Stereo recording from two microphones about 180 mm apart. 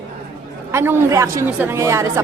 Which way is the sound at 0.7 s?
15° right (ahead or behind).